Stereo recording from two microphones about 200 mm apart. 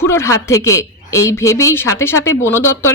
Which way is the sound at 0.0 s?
15° left (ahead or behind).